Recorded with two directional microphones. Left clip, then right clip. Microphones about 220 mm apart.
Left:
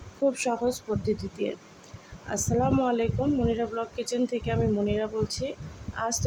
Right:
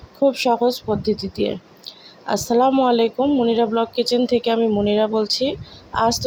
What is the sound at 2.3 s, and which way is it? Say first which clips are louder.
A man's voice: right 10 dB; 25° right (ahead or behind).